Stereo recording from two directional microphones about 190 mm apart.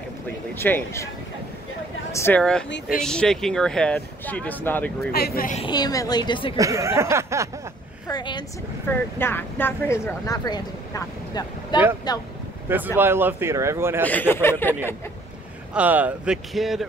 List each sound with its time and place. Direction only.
0.6 s speech: 10° left (ahead or behind)
2.1 s speech: 10° left (ahead or behind)
5.1 s speech: 55° left (ahead or behind)
5.7 s a woman's voice: 20° left (ahead or behind)
6.5 s speech: 15° right (ahead or behind)
8.1 s a woman's voice: 25° left (ahead or behind)
8.8 s a woman's voice: 10° left (ahead or behind)
12.6 s speech: 10° right (ahead or behind)
14.0 s speech: 10° left (ahead or behind)
15.7 s speech: 10° right (ahead or behind)